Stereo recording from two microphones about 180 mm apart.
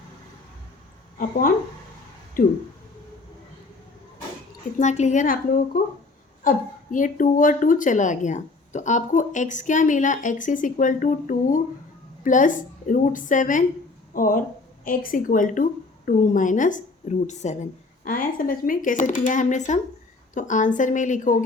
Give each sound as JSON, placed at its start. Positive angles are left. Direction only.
{"t": 1.2, "sound": "a woman's voice", "side_deg": 50}
{"t": 4.8, "sound": "a woman's voice", "side_deg": 40}